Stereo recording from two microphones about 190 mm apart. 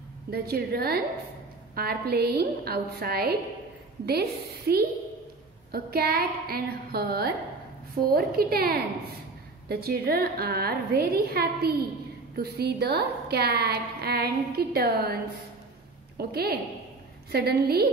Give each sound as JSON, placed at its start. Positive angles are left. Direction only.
{"t": 0.3, "sound": "a woman's voice", "side_deg": -55}
{"t": 16.2, "sound": "a woman's voice", "side_deg": -55}